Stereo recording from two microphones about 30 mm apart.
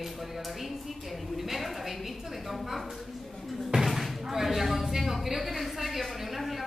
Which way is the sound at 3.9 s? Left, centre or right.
Centre.